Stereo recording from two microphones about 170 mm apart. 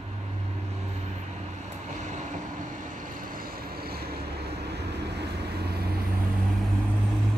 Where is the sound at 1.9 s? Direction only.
45° right (ahead or behind); by 5.9 s 70° right (ahead or behind).